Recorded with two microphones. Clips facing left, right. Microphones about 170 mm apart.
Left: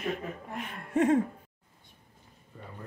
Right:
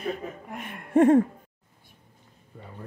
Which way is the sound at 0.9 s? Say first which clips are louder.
Right 7 dB; 55° right (ahead or behind).